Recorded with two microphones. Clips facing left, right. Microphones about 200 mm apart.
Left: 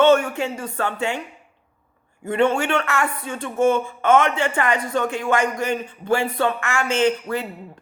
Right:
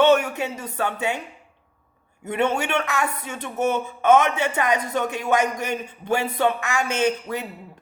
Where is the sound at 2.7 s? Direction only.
15° right (ahead or behind).